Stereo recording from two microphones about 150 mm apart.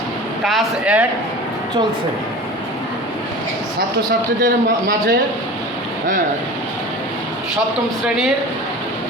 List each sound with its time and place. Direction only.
0.4 s speech: centre (ahead or behind)
4.4 s a man's voice: 75° right (ahead or behind)
8.0 s speech: 5° right (ahead or behind)